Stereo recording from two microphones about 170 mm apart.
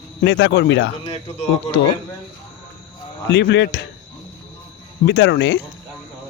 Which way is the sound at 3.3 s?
90° left.